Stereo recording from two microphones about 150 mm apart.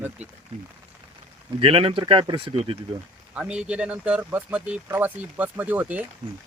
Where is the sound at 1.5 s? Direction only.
40° right (ahead or behind).